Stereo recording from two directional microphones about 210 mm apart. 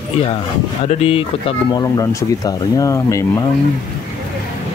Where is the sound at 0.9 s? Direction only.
30° left (ahead or behind).